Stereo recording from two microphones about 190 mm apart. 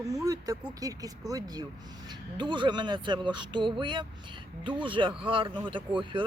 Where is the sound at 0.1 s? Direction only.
15° right (ahead or behind).